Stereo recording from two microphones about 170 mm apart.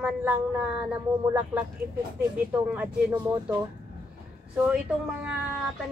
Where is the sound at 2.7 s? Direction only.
10° right (ahead or behind).